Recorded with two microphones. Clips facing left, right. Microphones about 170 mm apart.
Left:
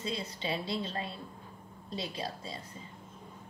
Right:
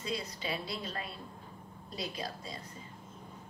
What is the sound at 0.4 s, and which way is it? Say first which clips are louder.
A woman's voice: left 4 dB; 25° left (ahead or behind).